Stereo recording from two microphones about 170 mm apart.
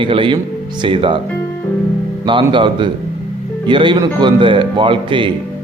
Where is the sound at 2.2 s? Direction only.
30° right (ahead or behind).